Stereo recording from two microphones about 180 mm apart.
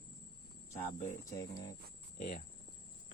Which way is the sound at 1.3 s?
20° left (ahead or behind).